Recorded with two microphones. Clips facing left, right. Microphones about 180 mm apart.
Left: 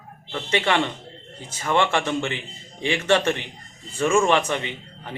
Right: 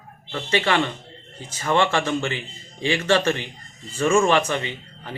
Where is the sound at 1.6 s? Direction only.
15° left (ahead or behind).